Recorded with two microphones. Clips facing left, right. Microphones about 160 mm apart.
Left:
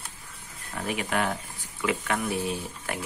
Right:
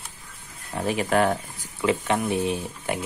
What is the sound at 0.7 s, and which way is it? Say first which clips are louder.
Speech: right 6 dB; 30° right (ahead or behind).